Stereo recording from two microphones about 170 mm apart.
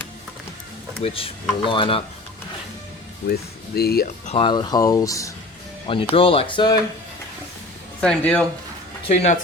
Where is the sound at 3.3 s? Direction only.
65° left (ahead or behind).